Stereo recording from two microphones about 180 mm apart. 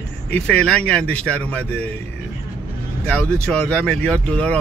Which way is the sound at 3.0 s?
5° left (ahead or behind).